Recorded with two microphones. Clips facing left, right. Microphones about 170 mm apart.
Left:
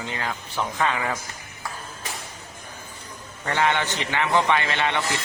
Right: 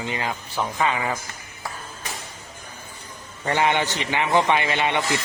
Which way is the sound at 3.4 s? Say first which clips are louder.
Right 2 dB; 15° right (ahead or behind).